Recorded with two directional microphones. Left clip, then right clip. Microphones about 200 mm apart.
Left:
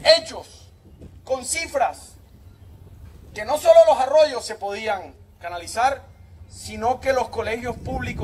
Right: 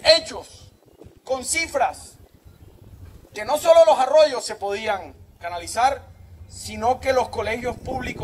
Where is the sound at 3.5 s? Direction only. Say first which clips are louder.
Left 1 dB; 40° right (ahead or behind).